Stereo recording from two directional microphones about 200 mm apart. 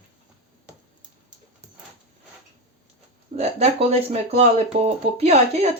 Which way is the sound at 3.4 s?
30° right (ahead or behind).